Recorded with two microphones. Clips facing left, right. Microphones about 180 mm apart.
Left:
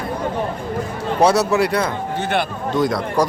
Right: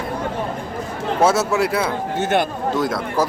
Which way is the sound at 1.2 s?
Centre (ahead or behind).